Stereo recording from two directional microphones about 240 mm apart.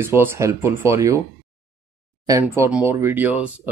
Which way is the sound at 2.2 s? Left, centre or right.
Centre.